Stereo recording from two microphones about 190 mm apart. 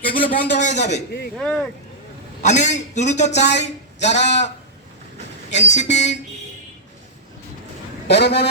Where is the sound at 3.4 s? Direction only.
65° left (ahead or behind).